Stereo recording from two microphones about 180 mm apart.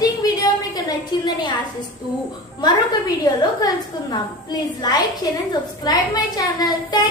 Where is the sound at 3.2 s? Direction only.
20° left (ahead or behind).